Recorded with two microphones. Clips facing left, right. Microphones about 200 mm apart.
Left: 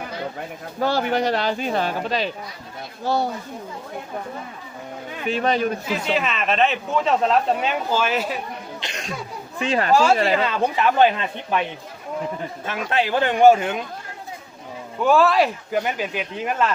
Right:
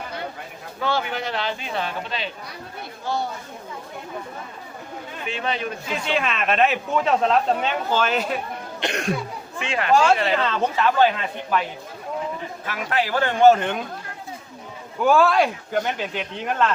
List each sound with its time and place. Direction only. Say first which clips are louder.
0.8 s speech: left 5 dB; 40° left (ahead or behind)
5.2 s speech: left 7 dB; 40° left (ahead or behind)
6.1 s speech: right 2 dB; centre (ahead or behind)
8.8 s cough: right 13 dB; 60° right (ahead or behind)
9.6 s speech: left 5 dB; 35° left (ahead or behind)
9.9 s a man's voice: even; 5° left (ahead or behind)
12.6 s a man's voice: left 2 dB; 25° left (ahead or behind); by 13.8 s 5° left (ahead or behind)
15.0 s speech: left 1 dB; centre (ahead or behind)